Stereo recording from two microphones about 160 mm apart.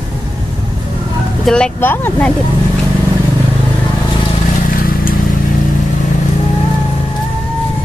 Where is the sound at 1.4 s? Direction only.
5° left (ahead or behind).